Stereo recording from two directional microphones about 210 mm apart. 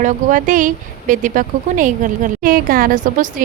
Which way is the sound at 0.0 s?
40° right (ahead or behind).